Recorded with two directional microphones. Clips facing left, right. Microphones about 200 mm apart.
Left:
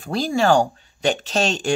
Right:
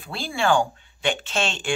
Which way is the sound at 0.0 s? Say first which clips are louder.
Left 6 dB; 40° left (ahead or behind).